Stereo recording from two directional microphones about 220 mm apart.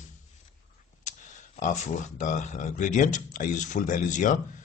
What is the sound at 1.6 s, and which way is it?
Speech, 35° left (ahead or behind).